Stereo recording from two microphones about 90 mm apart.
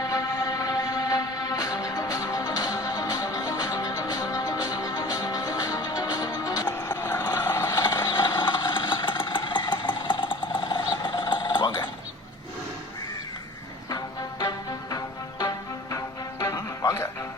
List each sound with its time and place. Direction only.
0.1 s music: 40° left (ahead or behind)
7.0 s a sound: 20° left (ahead or behind)
7.3 s vehicle: 25° left (ahead or behind)
7.6 s vehicle: 45° left (ahead or behind)
13.9 s music: 45° left (ahead or behind)